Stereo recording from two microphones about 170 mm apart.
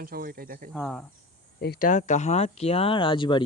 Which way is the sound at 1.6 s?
60° left (ahead or behind).